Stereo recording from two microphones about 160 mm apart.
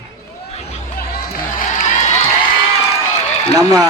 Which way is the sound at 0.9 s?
70° left (ahead or behind).